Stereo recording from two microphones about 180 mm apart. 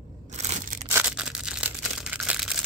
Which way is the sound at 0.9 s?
5° right (ahead or behind).